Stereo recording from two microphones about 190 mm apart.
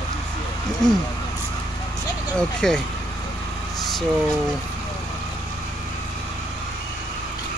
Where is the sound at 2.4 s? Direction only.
5° left (ahead or behind).